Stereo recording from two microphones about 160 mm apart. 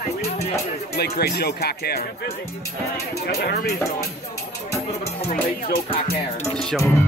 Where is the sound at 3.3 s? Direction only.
90° left.